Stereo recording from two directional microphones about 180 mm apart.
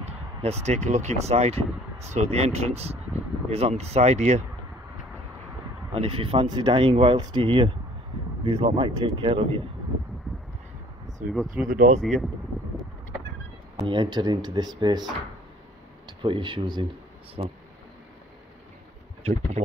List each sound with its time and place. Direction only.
0.0 s a sound: 35° right (ahead or behind)
0.8 s speech: 40° right (ahead or behind)
5.9 s speech: 30° right (ahead or behind)
11.3 s speech: 5° right (ahead or behind)
11.7 s speech: 45° right (ahead or behind)
12.0 s speech: centre (ahead or behind)
13.7 s speech: 25° right (ahead or behind)